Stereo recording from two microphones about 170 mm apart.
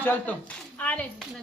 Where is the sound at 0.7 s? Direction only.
10° left (ahead or behind).